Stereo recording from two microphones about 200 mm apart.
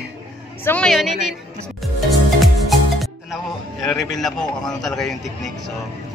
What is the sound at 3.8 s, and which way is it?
A man's voice, centre (ahead or behind).